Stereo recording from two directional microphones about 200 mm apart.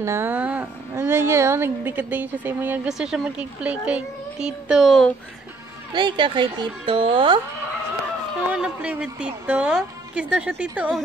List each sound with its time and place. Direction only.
0.0 s speech: 10° right (ahead or behind)
5.9 s a woman's voice: 25° right (ahead or behind)
8.5 s a woman's voice: 5° right (ahead or behind)